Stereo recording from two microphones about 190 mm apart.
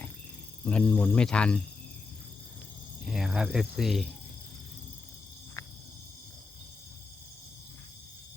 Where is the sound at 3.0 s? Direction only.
5° right (ahead or behind).